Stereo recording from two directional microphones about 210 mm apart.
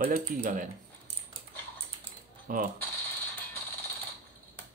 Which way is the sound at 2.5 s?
40° right (ahead or behind).